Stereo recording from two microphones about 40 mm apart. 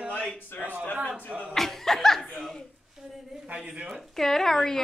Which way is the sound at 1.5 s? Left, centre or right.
Centre.